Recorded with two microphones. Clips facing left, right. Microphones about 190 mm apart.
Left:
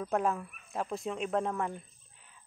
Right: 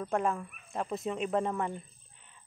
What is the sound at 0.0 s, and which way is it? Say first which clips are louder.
Speech: even; 5° left (ahead or behind).